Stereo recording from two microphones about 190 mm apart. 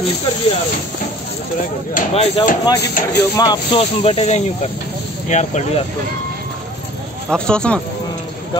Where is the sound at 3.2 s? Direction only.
20° left (ahead or behind); by 5.7 s 35° left (ahead or behind).